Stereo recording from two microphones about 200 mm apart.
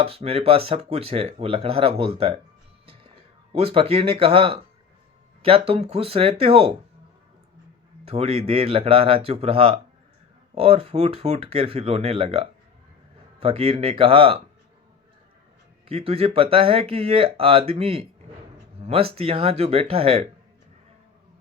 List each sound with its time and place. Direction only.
0.0 s speech: 30° right (ahead or behind)
2.8 s music: 30° right (ahead or behind)
3.5 s speech: 30° right (ahead or behind)
8.0 s speech: 30° right (ahead or behind)
15.9 s speech: 30° right (ahead or behind)